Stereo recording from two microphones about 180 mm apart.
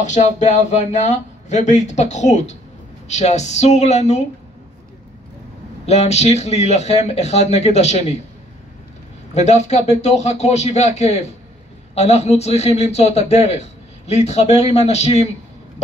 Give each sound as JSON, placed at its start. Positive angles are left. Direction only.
{"t": 0.0, "sound": "a man's voice", "side_deg": 40}
{"t": 5.9, "sound": "a man's voice", "side_deg": 35}
{"t": 9.3, "sound": "a man's voice", "side_deg": 40}